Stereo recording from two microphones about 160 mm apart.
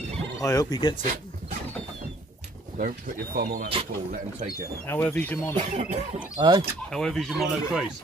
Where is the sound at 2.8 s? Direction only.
60° right (ahead or behind).